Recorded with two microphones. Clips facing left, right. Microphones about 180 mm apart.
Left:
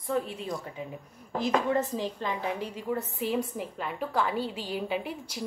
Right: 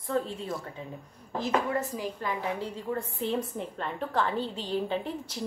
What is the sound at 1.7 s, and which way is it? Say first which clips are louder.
A woman's voice: left 3 dB; 25° left (ahead or behind).